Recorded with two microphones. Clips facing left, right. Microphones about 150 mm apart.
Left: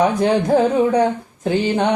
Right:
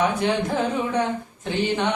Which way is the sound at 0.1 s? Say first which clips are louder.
Left 7 dB; 40° left (ahead or behind).